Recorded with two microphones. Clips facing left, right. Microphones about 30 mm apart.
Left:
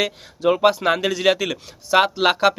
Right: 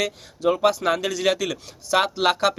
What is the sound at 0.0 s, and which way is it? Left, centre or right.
Speech, left.